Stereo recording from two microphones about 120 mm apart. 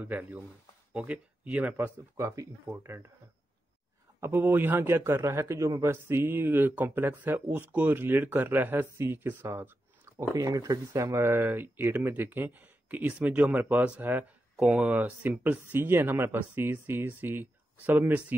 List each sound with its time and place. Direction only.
0.0 s a man's voice: 15° right (ahead or behind)
2.1 s speech: 25° right (ahead or behind)
4.2 s a man's voice: 20° right (ahead or behind)
10.1 s a man's voice: 30° right (ahead or behind)